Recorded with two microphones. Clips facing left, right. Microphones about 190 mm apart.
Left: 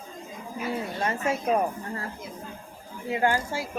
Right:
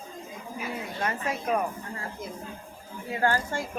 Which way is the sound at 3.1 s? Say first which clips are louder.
Left 1 dB; 15° left (ahead or behind).